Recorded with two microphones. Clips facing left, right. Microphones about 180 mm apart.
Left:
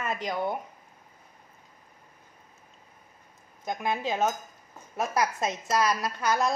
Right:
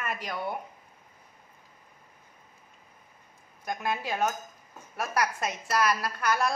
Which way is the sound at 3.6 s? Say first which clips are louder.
Left 2 dB; 20° left (ahead or behind).